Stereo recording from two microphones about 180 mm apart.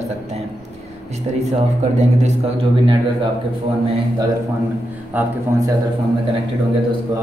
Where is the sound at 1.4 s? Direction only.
40° right (ahead or behind).